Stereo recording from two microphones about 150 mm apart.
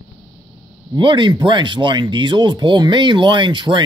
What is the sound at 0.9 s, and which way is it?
Speech, 30° right (ahead or behind).